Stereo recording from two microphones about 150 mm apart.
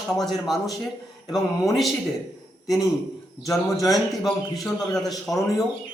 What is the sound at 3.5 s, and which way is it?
Speech, 20° left (ahead or behind).